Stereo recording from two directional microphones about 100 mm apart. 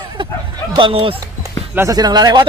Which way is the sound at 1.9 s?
40° right (ahead or behind).